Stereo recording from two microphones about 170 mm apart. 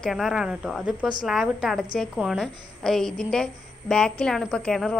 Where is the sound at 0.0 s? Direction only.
Centre (ahead or behind).